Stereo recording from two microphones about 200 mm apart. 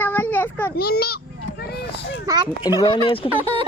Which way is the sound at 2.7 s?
20° left (ahead or behind).